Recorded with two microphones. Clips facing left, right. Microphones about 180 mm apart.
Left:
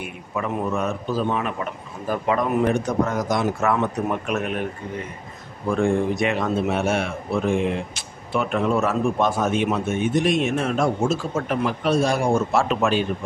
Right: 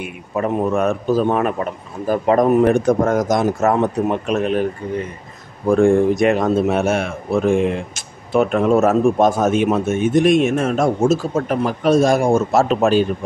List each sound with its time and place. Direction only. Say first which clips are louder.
0.3 s a man's voice: right 6 dB; 40° right (ahead or behind)
5.7 s a man's voice: right 7 dB; 45° right (ahead or behind)